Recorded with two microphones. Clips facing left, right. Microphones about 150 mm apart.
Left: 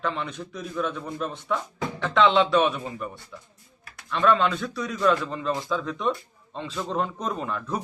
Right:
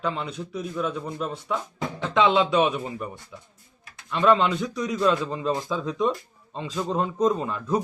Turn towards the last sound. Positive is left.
turn(degrees=-10)  # may be behind; listen again after turning